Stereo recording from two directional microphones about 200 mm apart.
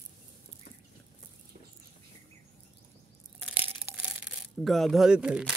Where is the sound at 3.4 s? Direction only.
10° right (ahead or behind).